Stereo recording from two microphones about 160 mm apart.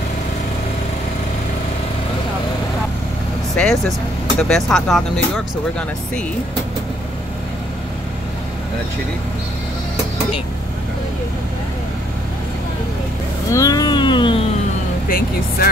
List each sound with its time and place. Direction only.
3.6 s speech: 10° left (ahead or behind)
13.5 s a sound: 20° left (ahead or behind)
15.0 s speech: 65° left (ahead or behind)